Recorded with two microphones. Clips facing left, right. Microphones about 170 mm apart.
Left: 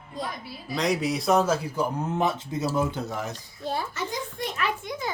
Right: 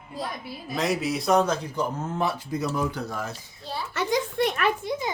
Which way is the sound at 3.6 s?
50° left (ahead or behind).